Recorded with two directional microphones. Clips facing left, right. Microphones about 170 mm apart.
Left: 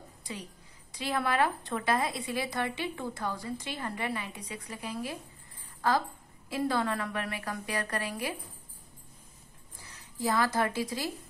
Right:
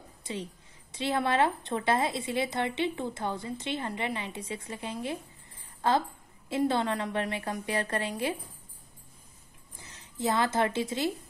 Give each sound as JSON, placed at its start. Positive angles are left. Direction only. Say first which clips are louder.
{"t": 0.2, "sound": "a woman's voice", "louder": "right 5 dB", "side_deg": -25}
{"t": 5.8, "sound": "a sound", "louder": "right 2 dB", "side_deg": -25}
{"t": 6.5, "sound": "speech", "louder": "right 2 dB", "side_deg": -25}
{"t": 9.8, "sound": "speech", "louder": "right 2 dB", "side_deg": -20}